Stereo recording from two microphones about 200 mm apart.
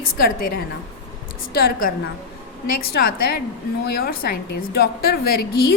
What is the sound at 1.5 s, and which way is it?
A woman's voice, 50° left (ahead or behind).